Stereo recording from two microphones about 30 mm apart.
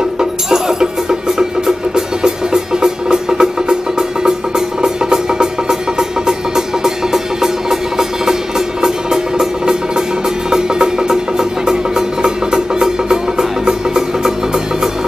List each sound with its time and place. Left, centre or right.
0.2 s speech: centre
2.0 s music: right